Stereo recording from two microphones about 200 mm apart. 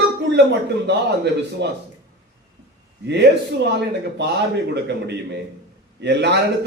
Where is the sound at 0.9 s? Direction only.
60° right (ahead or behind).